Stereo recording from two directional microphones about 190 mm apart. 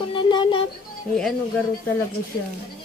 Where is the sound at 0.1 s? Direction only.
25° left (ahead or behind).